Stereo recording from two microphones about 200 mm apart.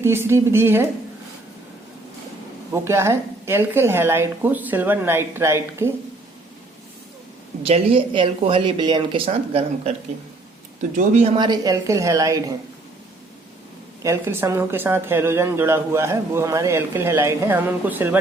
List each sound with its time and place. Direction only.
0.0 s speech: 10° right (ahead or behind)
2.7 s speech: 15° right (ahead or behind)
7.6 s speech: 30° right (ahead or behind)
10.9 s speech: 35° right (ahead or behind)
11.3 s speech: 20° right (ahead or behind)
14.0 s speech: 15° right (ahead or behind)